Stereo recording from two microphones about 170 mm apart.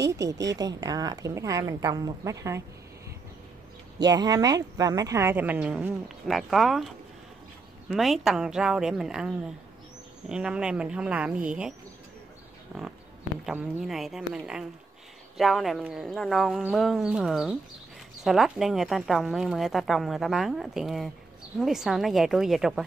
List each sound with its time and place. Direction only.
0.1 s a woman's voice: 20° right (ahead or behind)
4.0 s a woman's voice: 20° right (ahead or behind); by 6.9 s centre (ahead or behind)
7.9 s a woman's voice: centre (ahead or behind)
13.5 s a woman's voice: centre (ahead or behind)